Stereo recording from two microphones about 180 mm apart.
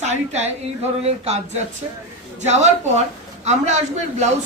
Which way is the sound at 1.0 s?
35° right (ahead or behind).